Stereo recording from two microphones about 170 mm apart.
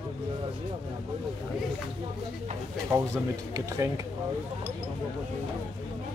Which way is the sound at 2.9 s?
15° right (ahead or behind).